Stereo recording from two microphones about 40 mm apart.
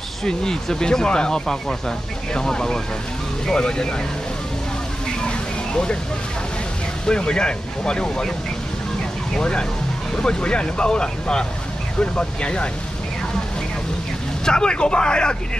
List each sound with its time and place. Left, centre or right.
0.2 s speech: centre
5.7 s speech: left
7.1 s speech: left
9.3 s speech: centre
14.4 s speech: left